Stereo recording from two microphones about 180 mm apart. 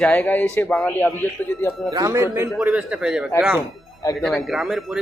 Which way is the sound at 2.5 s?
5° right (ahead or behind).